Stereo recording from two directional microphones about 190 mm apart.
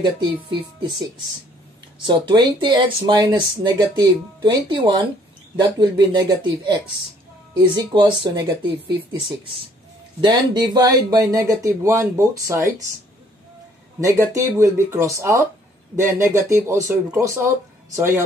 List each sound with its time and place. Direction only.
0.0 s speech: 25° right (ahead or behind)
2.0 s speech: 25° right (ahead or behind)
10.2 s speech: 20° right (ahead or behind)
14.0 s speech: 15° right (ahead or behind)